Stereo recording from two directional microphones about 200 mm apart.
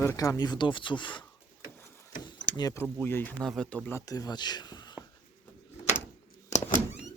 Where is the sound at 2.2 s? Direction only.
20° left (ahead or behind).